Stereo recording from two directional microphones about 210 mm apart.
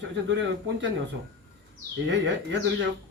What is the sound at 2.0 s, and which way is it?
Speech, 55° right (ahead or behind).